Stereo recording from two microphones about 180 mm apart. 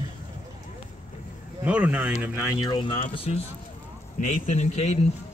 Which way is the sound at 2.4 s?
25° left (ahead or behind).